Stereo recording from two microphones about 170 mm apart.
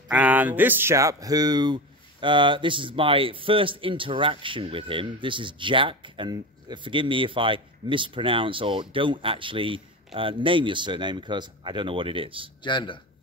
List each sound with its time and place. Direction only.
0.1 s speech: 10° right (ahead or behind); by 12.4 s 30° right (ahead or behind)
12.6 s speech: 25° left (ahead or behind)